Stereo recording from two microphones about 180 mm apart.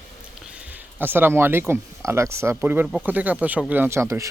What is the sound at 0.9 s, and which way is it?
A man's voice, 10° right (ahead or behind).